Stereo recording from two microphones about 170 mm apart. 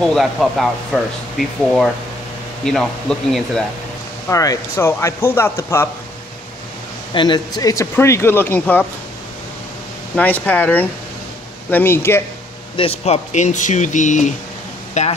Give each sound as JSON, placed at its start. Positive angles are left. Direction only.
{"t": 0.0, "sound": "speech", "side_deg": 0}
{"t": 2.6, "sound": "speech", "side_deg": 5}
{"t": 4.3, "sound": "speech", "side_deg": 20}
{"t": 7.2, "sound": "speech", "side_deg": 25}
{"t": 10.1, "sound": "speech", "side_deg": 10}
{"t": 12.7, "sound": "speech", "side_deg": 35}